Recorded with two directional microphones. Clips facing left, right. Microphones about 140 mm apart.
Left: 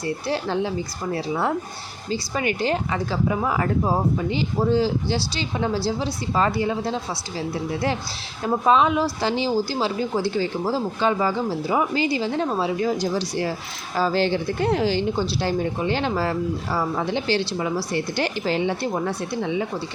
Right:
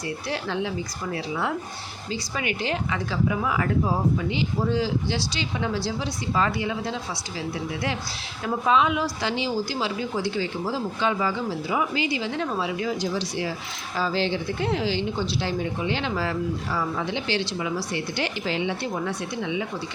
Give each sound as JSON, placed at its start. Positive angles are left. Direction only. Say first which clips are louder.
{"t": 0.0, "sound": "speech", "louder": "left 4 dB", "side_deg": 35}